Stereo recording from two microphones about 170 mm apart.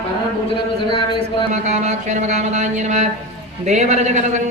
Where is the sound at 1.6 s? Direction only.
45° right (ahead or behind).